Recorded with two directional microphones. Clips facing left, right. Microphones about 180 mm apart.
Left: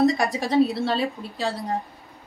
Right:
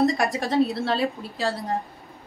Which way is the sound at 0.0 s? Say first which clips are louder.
Left 1 dB; centre (ahead or behind).